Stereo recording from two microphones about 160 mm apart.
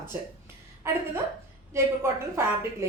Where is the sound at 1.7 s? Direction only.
15° right (ahead or behind).